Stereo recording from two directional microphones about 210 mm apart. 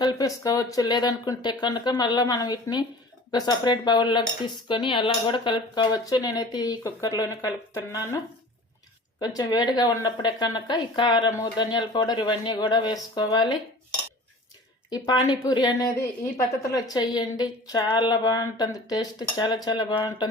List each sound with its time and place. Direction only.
0.0 s speech: 20° left (ahead or behind)
9.2 s speech: 20° left (ahead or behind)
14.8 s speech: 20° left (ahead or behind)